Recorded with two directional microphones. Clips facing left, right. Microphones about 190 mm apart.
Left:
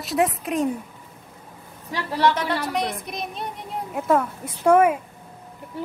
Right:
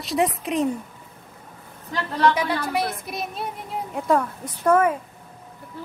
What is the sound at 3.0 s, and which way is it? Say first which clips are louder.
A woman's voice: right 1 dB; 5° right (ahead or behind).